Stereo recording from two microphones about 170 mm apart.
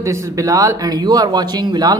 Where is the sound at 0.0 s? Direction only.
15° right (ahead or behind).